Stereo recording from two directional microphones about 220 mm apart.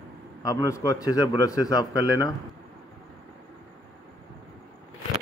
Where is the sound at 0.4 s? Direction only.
15° left (ahead or behind).